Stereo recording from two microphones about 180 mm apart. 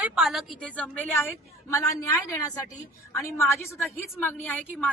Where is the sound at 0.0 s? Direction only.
5° right (ahead or behind).